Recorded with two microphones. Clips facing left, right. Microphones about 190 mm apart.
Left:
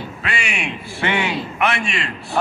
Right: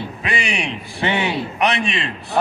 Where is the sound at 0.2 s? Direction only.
15° right (ahead or behind).